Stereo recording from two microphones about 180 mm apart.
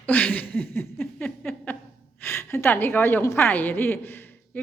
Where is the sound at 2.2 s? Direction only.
10° left (ahead or behind).